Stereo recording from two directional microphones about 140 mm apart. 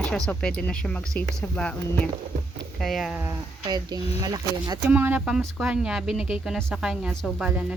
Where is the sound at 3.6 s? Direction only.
30° right (ahead or behind).